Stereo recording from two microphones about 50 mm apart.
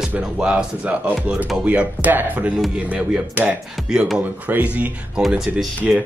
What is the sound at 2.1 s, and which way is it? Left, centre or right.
Speech, right.